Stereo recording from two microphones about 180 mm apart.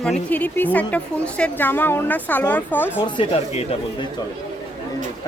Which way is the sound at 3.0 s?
30° left (ahead or behind).